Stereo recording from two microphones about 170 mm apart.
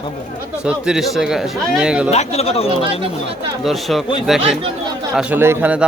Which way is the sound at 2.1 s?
40° left (ahead or behind).